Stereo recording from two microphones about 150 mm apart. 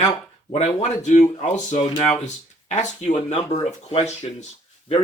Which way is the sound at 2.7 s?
50° left (ahead or behind).